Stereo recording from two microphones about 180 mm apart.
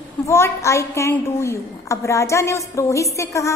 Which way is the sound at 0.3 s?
15° left (ahead or behind).